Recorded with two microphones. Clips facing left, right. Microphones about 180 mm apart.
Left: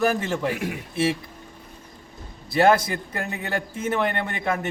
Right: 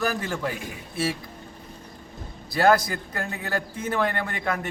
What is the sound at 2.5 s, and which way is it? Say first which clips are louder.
A man's voice: left 2 dB; 25° left (ahead or behind).